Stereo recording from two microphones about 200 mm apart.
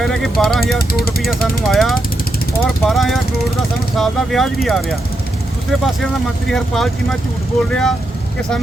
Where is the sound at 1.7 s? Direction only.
Centre (ahead or behind).